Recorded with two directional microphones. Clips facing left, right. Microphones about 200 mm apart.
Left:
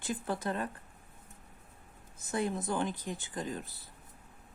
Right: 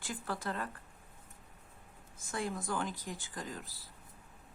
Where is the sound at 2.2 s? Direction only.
20° left (ahead or behind).